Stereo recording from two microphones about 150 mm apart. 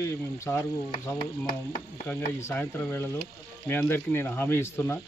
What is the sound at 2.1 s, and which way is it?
Speech, 15° left (ahead or behind).